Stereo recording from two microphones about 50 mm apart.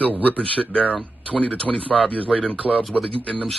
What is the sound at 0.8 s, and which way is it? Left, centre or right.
Speech, right.